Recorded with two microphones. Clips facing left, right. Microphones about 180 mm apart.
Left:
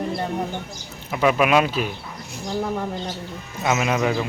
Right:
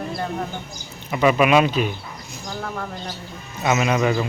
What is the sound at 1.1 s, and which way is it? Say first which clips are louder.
Speech: right 2 dB; centre (ahead or behind).